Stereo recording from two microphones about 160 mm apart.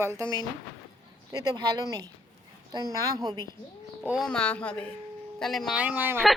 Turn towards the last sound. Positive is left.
turn(degrees=-10)  # may be behind; listen again after turning